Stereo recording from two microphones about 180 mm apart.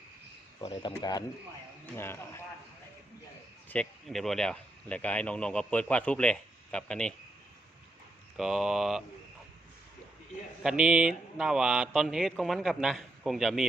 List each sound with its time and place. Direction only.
0.6 s a man's voice: 25° left (ahead or behind)
2.0 s speech: 15° left (ahead or behind)
3.7 s a man's voice: 5° left (ahead or behind)
8.4 s a man's voice: centre (ahead or behind)
10.6 s a man's voice: 5° right (ahead or behind)